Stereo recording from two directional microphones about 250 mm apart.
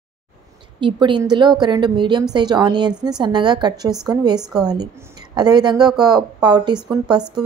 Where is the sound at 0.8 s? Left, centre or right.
Centre.